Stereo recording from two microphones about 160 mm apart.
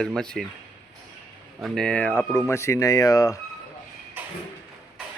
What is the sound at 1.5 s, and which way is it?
Speech, centre (ahead or behind).